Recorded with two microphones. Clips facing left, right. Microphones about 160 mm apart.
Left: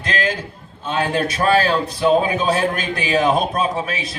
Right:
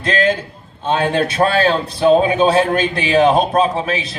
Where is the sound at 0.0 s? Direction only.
30° right (ahead or behind).